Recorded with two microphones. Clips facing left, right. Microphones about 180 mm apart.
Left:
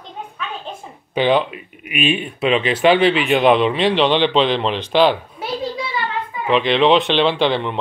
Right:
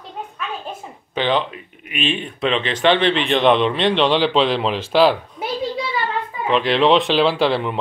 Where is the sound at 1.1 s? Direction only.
10° left (ahead or behind).